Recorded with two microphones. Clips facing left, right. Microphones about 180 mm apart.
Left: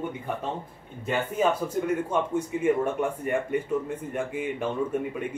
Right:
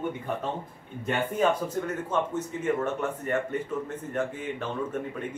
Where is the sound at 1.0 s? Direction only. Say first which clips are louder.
Even; 10° left (ahead or behind).